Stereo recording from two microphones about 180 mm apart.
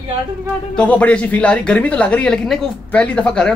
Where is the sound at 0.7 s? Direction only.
10° left (ahead or behind).